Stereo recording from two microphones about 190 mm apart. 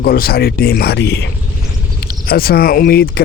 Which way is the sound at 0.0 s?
55° left (ahead or behind).